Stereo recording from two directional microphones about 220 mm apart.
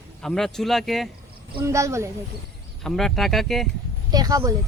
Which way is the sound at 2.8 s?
Centre (ahead or behind).